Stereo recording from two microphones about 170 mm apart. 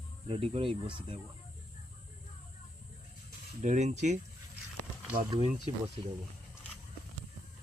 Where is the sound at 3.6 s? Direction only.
45° right (ahead or behind).